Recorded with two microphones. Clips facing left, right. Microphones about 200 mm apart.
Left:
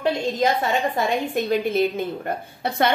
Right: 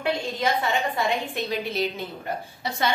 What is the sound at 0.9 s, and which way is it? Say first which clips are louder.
A woman's voice: left 4 dB; 50° left (ahead or behind).